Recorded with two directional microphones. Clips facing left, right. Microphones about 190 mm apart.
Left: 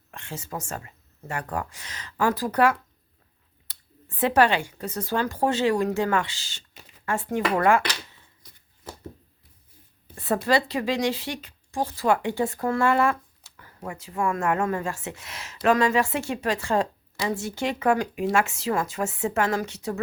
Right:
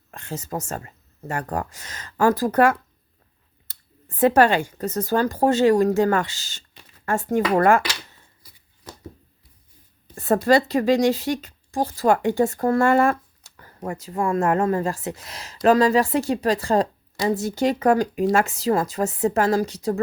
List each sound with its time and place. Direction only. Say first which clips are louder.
0.1 s a woman's voice: right 5 dB; 40° right (ahead or behind)
8.4 s a sound: even; 5° right (ahead or behind)
10.2 s a woman's voice: right 5 dB; 45° right (ahead or behind)